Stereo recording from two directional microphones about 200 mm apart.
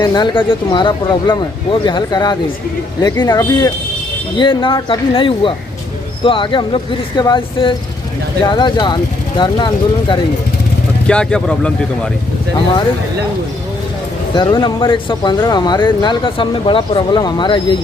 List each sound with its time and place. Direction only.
0.0 s speech: 20° left (ahead or behind)
11.1 s speech: 5° left (ahead or behind)
14.3 s speech: 25° left (ahead or behind)